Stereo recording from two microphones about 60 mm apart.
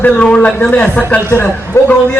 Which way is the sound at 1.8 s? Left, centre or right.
Left.